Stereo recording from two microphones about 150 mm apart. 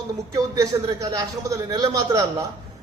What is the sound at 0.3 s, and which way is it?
A man's voice, 20° right (ahead or behind).